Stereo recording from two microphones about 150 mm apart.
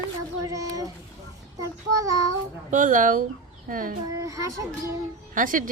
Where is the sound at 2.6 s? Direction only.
55° right (ahead or behind).